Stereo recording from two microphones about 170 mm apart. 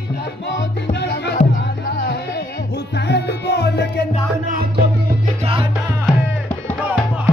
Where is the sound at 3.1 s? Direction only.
80° left.